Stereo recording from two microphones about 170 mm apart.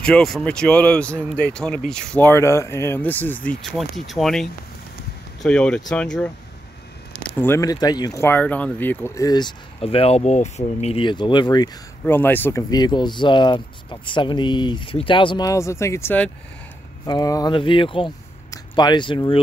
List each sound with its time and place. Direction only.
0.0 s speech: 5° left (ahead or behind); by 9.5 s 20° left (ahead or behind)
9.8 s speech: 35° left (ahead or behind)
12.1 s speech: 10° left (ahead or behind)
17.0 s speech: 25° left (ahead or behind)